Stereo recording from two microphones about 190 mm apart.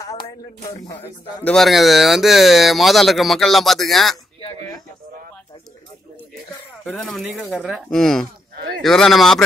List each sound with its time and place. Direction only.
0.0 s speech: 20° left (ahead or behind); by 4.2 s centre (ahead or behind)
4.4 s a sound: 25° left (ahead or behind)
6.8 s speech: 5° left (ahead or behind)